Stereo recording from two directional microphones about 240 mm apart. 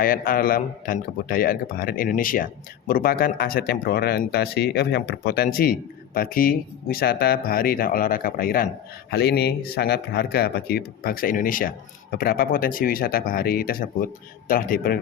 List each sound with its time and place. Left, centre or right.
0.0 s speech: left